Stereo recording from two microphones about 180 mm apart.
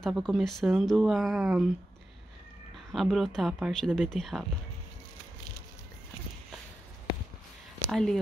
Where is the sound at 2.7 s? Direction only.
Centre (ahead or behind).